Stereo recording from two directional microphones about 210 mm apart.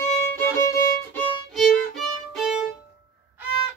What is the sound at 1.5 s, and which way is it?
Violin, centre (ahead or behind).